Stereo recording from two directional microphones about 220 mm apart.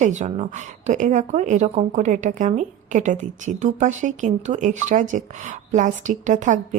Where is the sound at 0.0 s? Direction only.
35° right (ahead or behind).